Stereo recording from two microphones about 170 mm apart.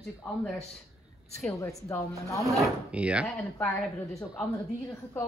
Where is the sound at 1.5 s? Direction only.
20° left (ahead or behind).